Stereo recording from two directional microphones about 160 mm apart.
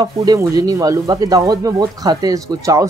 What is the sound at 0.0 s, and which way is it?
Speech, 25° right (ahead or behind).